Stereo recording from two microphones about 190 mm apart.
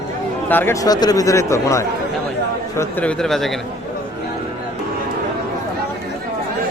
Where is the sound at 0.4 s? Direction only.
10° left (ahead or behind).